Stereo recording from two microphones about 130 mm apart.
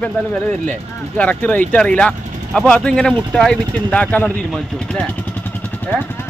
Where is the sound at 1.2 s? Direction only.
10° left (ahead or behind).